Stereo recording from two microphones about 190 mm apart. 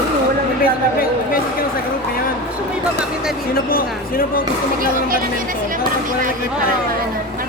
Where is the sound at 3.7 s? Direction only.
50° left (ahead or behind).